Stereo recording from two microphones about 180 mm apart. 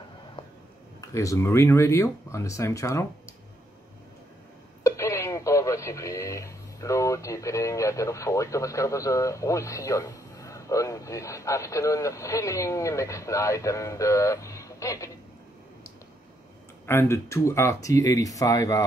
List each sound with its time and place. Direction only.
1.0 s speech: 20° left (ahead or behind)
4.8 s speech: 15° left (ahead or behind)
16.8 s speech: 15° left (ahead or behind)